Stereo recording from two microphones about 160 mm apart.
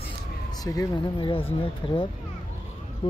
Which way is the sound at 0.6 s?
20° left (ahead or behind).